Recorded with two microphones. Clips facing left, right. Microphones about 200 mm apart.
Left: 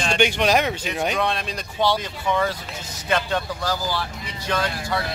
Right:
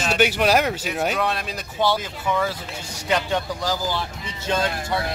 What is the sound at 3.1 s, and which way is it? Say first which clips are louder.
Speech: right 1 dB; 15° right (ahead or behind).